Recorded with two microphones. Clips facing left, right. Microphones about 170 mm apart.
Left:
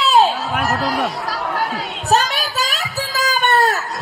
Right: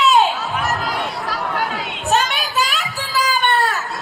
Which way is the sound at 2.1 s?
40° left (ahead or behind).